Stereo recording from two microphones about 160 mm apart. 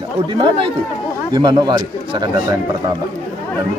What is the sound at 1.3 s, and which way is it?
Speech, 25° right (ahead or behind).